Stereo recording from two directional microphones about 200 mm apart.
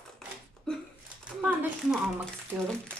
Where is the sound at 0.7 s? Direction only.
Centre (ahead or behind).